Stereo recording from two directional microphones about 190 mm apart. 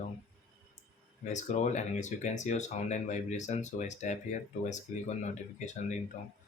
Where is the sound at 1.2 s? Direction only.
40° left (ahead or behind).